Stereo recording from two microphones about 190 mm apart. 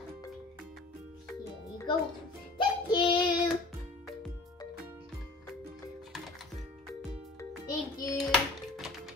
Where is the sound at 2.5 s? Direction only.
20° left (ahead or behind).